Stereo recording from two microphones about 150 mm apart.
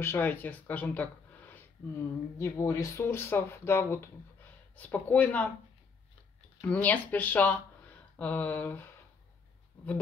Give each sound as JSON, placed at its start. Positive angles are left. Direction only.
{"t": 0.0, "sound": "speech", "side_deg": 15}
{"t": 2.3, "sound": "speech", "side_deg": 20}
{"t": 6.6, "sound": "speech", "side_deg": 10}